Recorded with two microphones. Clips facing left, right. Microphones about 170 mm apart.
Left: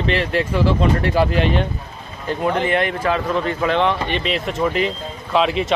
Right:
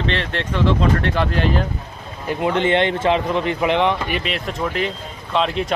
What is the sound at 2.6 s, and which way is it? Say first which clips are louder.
Speech: right 2 dB; 25° right (ahead or behind).